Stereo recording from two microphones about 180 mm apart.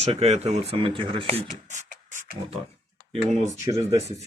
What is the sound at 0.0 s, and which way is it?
Speech, 35° right (ahead or behind).